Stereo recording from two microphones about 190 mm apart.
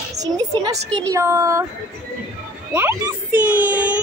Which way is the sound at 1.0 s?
15° right (ahead or behind).